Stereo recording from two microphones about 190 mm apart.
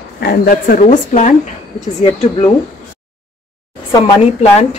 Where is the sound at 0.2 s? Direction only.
50° left (ahead or behind).